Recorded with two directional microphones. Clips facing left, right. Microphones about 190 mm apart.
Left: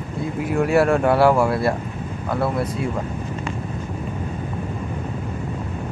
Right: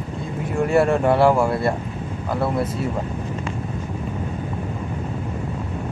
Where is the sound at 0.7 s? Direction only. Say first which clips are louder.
Even; centre (ahead or behind).